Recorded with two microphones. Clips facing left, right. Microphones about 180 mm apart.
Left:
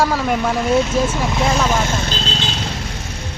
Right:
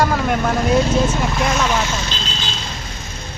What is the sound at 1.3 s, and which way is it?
Speech, 25° left (ahead or behind).